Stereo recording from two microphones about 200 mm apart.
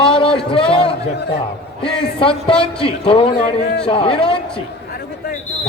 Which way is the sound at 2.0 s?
25° left (ahead or behind).